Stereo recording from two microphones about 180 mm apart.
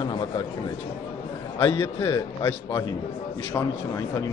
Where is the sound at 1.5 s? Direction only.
30° left (ahead or behind).